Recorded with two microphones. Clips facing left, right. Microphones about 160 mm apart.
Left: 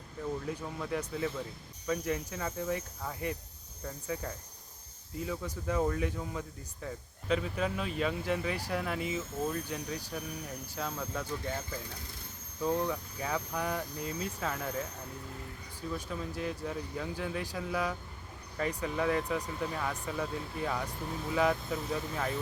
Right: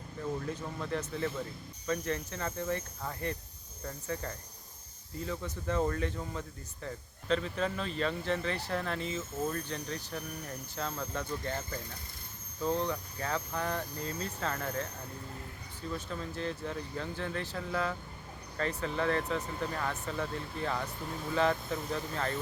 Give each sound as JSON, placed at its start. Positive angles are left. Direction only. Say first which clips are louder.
{"t": 0.4, "sound": "speech", "louder": "even", "side_deg": 5}
{"t": 15.9, "sound": "speech", "louder": "left 1 dB", "side_deg": 10}